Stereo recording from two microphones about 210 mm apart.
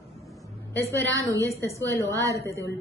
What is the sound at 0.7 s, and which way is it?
Speech, 10° left (ahead or behind).